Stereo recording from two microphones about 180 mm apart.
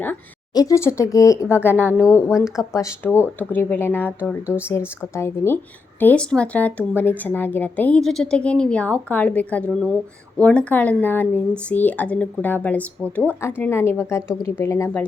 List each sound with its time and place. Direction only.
0.5 s speech: 20° left (ahead or behind)
5.1 s speech: 15° left (ahead or behind)